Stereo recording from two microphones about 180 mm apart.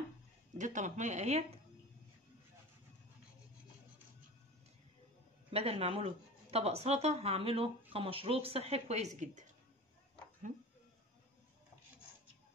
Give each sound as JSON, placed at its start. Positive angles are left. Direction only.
{"t": 0.6, "sound": "speech", "side_deg": -40}
{"t": 5.5, "sound": "speech", "side_deg": -35}